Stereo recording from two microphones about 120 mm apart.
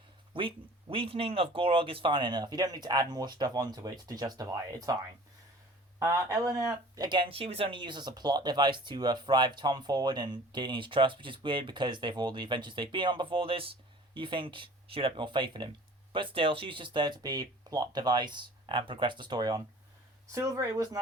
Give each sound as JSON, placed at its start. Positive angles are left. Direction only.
{"t": 0.3, "sound": "speech", "side_deg": -45}
{"t": 6.0, "sound": "speech", "side_deg": -25}